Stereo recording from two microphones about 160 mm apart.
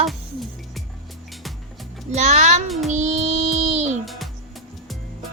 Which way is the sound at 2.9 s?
45° right (ahead or behind).